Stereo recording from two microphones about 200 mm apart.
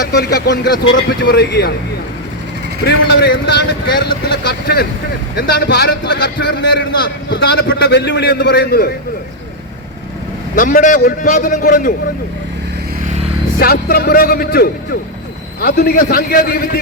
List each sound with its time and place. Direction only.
0.2 s a man's voice: 55° left (ahead or behind)
2.8 s speech: 55° left (ahead or behind)
10.5 s a man's voice: 40° left (ahead or behind)
13.6 s a man's voice: 50° left (ahead or behind)